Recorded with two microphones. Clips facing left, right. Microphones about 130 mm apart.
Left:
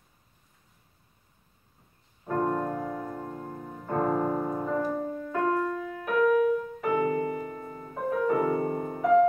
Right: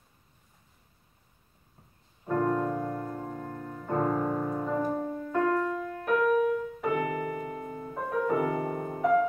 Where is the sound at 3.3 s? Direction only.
20° left (ahead or behind).